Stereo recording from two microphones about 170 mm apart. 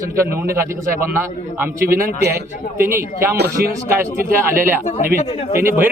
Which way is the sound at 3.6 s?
65° right (ahead or behind).